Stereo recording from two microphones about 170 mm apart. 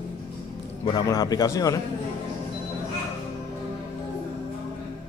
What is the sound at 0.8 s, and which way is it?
Speech, 25° left (ahead or behind).